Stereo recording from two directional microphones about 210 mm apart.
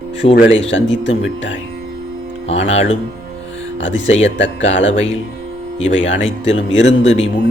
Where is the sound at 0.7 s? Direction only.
60° left (ahead or behind).